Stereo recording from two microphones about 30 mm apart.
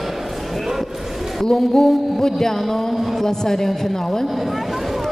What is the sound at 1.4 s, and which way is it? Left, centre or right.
Speech, left.